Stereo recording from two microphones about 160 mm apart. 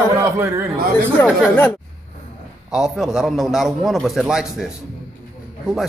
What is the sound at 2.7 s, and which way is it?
A man's voice, 5° right (ahead or behind).